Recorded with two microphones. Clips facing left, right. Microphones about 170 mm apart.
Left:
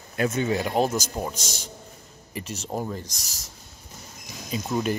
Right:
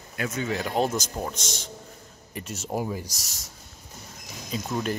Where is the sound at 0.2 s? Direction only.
25° left (ahead or behind).